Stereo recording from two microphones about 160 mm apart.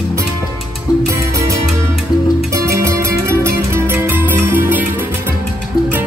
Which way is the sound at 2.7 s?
20° right (ahead or behind).